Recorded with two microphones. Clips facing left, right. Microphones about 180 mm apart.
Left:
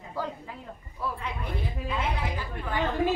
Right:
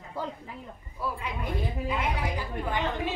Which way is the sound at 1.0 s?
10° right (ahead or behind).